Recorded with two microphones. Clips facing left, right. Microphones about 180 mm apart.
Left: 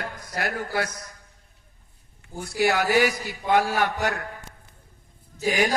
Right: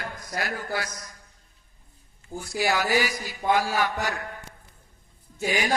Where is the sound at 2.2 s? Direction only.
60° left (ahead or behind).